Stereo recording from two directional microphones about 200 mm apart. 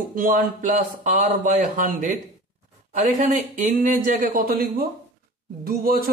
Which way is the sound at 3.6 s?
45° right (ahead or behind).